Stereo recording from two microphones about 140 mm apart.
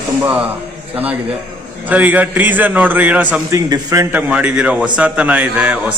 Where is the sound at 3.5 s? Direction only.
25° right (ahead or behind).